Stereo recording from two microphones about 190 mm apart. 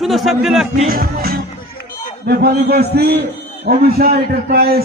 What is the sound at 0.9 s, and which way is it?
Music, 50° right (ahead or behind).